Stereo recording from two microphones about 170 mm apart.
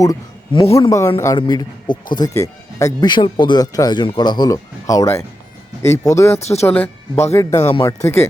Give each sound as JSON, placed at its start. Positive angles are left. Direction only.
{"t": 0.0, "sound": "speech", "side_deg": 20}
{"t": 6.4, "sound": "speech", "side_deg": 40}
{"t": 6.7, "sound": "speech", "side_deg": 10}